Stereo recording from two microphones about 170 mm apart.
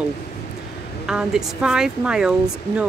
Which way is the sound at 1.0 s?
5° right (ahead or behind).